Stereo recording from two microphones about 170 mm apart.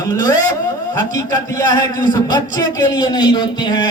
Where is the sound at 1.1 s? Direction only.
20° left (ahead or behind).